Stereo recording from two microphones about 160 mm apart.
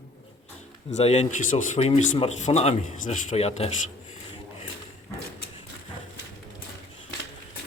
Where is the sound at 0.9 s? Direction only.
45° left (ahead or behind).